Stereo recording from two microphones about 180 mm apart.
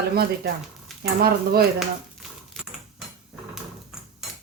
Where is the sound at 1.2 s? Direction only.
60° right (ahead or behind).